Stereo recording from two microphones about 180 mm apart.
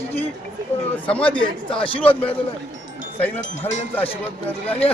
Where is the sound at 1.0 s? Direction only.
5° left (ahead or behind).